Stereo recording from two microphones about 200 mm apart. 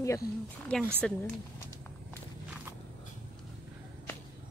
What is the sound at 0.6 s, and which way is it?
Speech, 5° left (ahead or behind).